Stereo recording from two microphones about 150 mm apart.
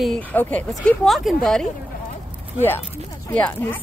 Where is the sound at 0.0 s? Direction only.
5° left (ahead or behind).